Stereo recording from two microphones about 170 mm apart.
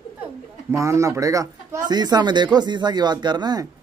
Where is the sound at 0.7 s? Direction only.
20° right (ahead or behind).